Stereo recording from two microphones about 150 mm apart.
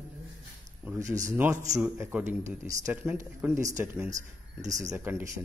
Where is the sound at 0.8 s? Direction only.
20° right (ahead or behind).